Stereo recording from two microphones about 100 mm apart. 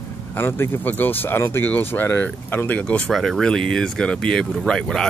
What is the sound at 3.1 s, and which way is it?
Speech, centre (ahead or behind).